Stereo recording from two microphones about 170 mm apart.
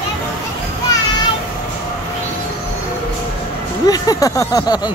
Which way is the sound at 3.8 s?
20° left (ahead or behind).